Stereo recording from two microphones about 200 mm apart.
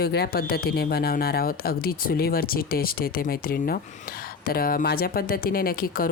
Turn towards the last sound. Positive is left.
turn(degrees=45)  # may be behind; listen again after turning